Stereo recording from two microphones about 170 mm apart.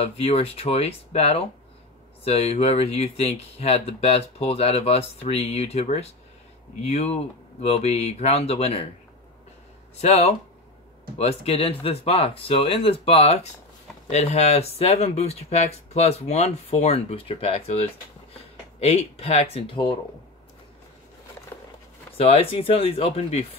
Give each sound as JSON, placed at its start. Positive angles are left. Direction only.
{"t": 0.0, "sound": "speech", "side_deg": 35}
{"t": 9.9, "sound": "speech", "side_deg": 40}
{"t": 22.1, "sound": "speech", "side_deg": 35}